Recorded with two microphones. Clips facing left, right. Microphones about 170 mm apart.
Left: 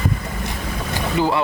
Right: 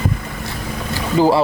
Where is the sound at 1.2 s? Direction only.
35° right (ahead or behind).